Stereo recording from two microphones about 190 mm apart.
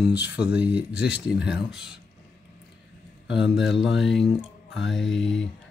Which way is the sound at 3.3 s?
Centre (ahead or behind).